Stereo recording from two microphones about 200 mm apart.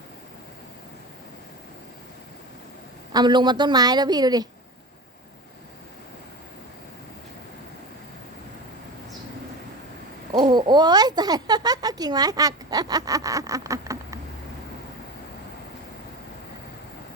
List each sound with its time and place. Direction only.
3.1 s a woman's voice: 20° right (ahead or behind)
10.3 s a woman's voice: 20° right (ahead or behind)